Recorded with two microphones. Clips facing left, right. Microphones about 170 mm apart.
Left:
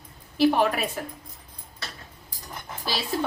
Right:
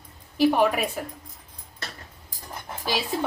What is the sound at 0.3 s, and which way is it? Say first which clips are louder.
Speech: right 1 dB; 10° right (ahead or behind).